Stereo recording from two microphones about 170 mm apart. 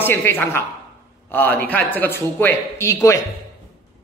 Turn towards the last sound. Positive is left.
turn(degrees=15)  # may be behind; listen again after turning